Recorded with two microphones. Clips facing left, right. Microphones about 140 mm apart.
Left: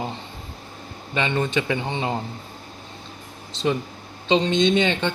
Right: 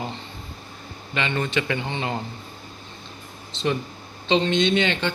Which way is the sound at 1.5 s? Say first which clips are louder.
Left 2 dB; 20° left (ahead or behind).